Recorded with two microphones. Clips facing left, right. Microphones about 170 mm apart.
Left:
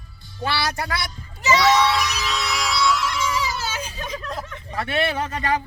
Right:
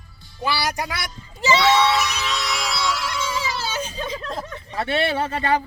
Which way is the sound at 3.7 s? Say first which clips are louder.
Right 3 dB; 30° right (ahead or behind).